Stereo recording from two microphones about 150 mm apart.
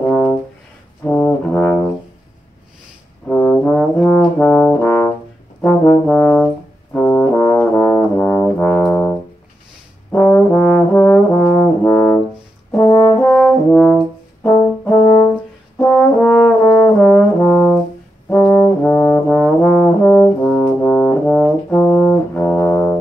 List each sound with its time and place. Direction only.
0.0 s brass instrument: 10° left (ahead or behind)
3.3 s trombone: 10° left (ahead or behind)
5.6 s brass instrument: 10° left (ahead or behind)
10.1 s trombone: 15° left (ahead or behind)
12.7 s brass instrument: 20° left (ahead or behind)
13.2 s brass instrument: 5° left (ahead or behind)
15.8 s french horn: 10° left (ahead or behind)
16.6 s brass instrument: 20° left (ahead or behind)
18.3 s trombone: 10° left (ahead or behind)